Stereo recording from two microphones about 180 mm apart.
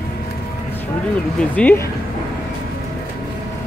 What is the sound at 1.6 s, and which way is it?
Speech, 5° left (ahead or behind).